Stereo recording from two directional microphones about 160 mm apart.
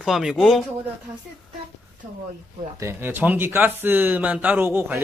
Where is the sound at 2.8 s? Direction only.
15° right (ahead or behind).